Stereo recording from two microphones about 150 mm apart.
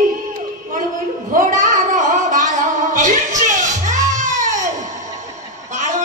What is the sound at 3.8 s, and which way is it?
Baby cry, 55° right (ahead or behind).